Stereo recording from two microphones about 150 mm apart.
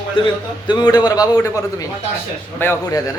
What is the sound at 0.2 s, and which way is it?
A man's voice, 35° left (ahead or behind).